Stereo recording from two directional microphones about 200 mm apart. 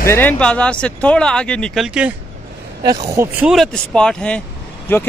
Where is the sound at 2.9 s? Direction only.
20° right (ahead or behind).